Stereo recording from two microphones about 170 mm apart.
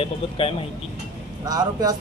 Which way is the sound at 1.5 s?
25° right (ahead or behind).